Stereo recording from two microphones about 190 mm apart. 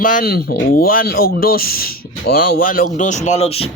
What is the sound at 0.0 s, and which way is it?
Speech, 45° left (ahead or behind).